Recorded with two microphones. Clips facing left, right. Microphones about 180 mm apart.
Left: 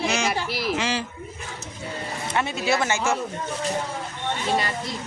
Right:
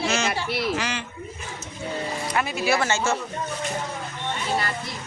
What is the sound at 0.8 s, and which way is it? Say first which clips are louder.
Speech: left 3 dB; 30° left (ahead or behind).